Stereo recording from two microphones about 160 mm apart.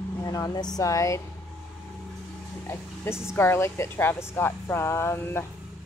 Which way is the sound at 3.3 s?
15° left (ahead or behind).